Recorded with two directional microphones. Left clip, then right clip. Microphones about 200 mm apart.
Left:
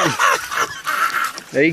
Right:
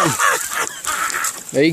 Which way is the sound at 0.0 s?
45° left (ahead or behind).